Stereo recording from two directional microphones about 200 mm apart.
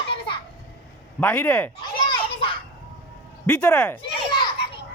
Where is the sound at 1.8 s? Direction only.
25° left (ahead or behind).